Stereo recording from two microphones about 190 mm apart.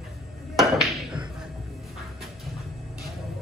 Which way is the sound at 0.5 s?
Centre (ahead or behind).